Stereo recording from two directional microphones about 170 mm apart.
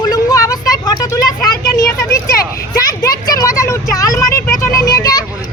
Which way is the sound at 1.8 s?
20° left (ahead or behind).